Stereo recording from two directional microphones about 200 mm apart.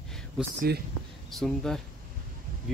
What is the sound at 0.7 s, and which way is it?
Speech, 50° right (ahead or behind).